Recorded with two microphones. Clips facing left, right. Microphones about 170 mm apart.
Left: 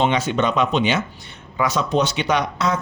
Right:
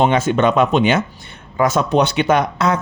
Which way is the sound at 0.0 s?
50° right (ahead or behind).